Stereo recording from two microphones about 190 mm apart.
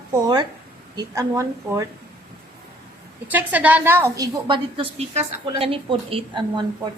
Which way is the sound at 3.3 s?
10° right (ahead or behind).